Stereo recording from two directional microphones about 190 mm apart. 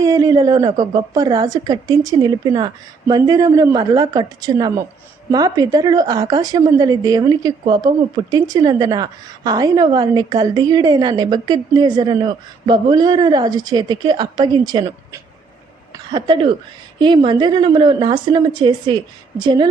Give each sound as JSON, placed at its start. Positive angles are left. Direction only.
{"t": 0.0, "sound": "a man's voice", "side_deg": -20}